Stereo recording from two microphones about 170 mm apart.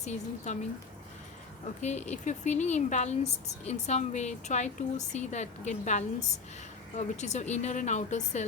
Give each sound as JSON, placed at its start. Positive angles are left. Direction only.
{"t": 0.0, "sound": "speech", "side_deg": 40}
{"t": 1.8, "sound": "speech", "side_deg": 40}